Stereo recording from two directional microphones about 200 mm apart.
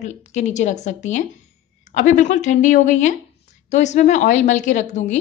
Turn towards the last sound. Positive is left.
turn(degrees=35)  # may be behind; listen again after turning